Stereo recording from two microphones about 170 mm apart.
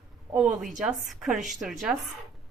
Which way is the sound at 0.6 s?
Centre (ahead or behind).